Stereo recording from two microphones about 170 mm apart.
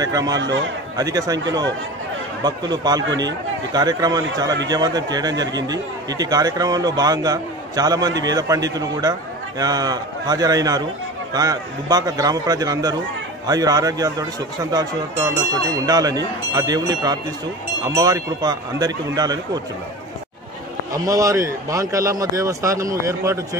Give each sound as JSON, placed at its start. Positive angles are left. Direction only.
{"t": 0.0, "sound": "a man's voice", "side_deg": -20}
{"t": 2.4, "sound": "a man's voice", "side_deg": -25}
{"t": 20.9, "sound": "a man's voice", "side_deg": -20}